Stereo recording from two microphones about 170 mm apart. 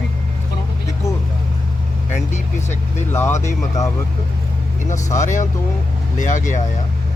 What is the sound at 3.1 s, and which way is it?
Speech, 15° left (ahead or behind).